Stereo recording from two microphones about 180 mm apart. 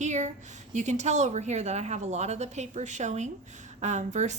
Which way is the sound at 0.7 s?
40° right (ahead or behind).